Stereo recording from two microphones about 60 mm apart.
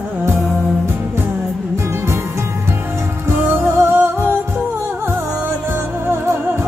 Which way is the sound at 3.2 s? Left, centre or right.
Right.